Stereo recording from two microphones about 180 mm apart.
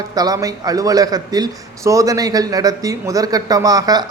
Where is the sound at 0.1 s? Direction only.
20° right (ahead or behind).